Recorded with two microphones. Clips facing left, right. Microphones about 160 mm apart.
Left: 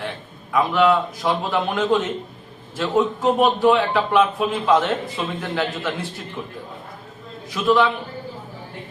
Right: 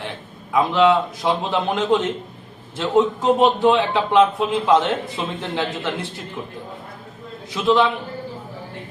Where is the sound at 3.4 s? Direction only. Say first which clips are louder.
Even; 25° right (ahead or behind).